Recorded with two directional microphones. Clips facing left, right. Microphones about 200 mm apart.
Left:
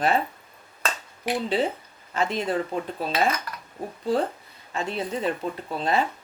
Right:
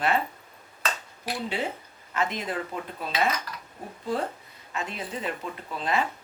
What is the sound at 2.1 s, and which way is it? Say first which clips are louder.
Speech: left 4 dB; 30° left (ahead or behind).